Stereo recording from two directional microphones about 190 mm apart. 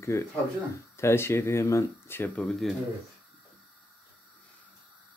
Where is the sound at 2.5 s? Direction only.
Centre (ahead or behind).